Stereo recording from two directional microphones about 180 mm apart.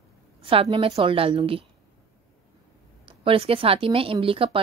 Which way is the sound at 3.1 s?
30° right (ahead or behind).